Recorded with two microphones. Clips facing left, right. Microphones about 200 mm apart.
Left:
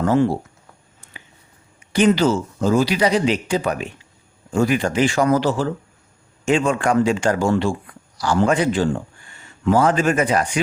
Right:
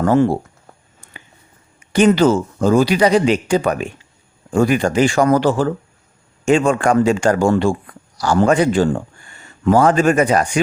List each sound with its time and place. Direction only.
0.0 s speech: 50° right (ahead or behind)
1.9 s speech: 50° right (ahead or behind)